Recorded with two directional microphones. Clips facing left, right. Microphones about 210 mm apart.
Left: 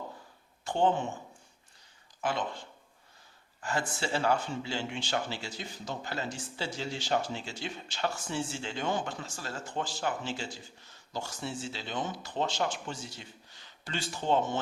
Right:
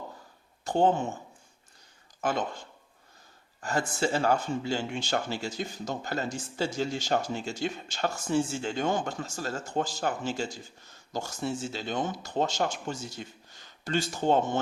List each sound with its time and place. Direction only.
0.6 s speech: 40° right (ahead or behind)
2.2 s speech: 45° right (ahead or behind)